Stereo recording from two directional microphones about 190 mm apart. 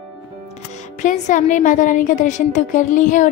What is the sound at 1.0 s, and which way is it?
A woman's voice, 40° left (ahead or behind).